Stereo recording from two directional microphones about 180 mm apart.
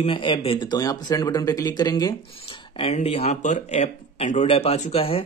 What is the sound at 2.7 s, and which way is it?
A man's voice, 35° left (ahead or behind).